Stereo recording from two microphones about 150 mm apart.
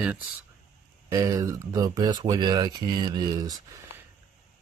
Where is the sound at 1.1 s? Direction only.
20° right (ahead or behind).